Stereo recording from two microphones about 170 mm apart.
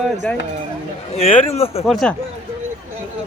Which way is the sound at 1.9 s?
Centre (ahead or behind).